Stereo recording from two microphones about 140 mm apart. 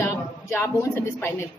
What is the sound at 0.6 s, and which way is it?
Speech, 20° left (ahead or behind).